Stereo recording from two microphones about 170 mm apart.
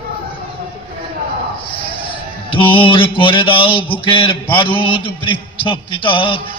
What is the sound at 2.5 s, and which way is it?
Mantra, 30° left (ahead or behind).